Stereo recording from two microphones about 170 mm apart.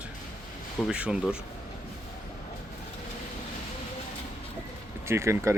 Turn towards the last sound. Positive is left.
turn(degrees=-15)  # may be behind; listen again after turning